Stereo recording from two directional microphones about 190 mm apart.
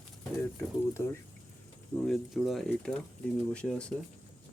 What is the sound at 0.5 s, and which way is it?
Speech, 15° left (ahead or behind).